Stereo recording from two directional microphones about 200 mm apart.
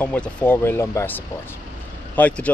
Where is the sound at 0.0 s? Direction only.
5° left (ahead or behind).